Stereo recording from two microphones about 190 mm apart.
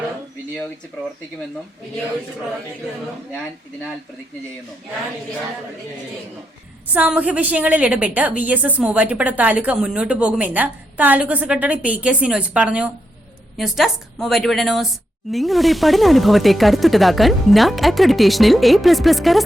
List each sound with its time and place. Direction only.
6.9 s a woman's voice: 10° right (ahead or behind)